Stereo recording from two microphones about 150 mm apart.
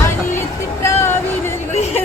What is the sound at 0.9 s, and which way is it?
Music, 15° left (ahead or behind).